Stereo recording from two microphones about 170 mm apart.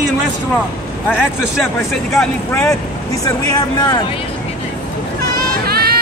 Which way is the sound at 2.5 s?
15° left (ahead or behind).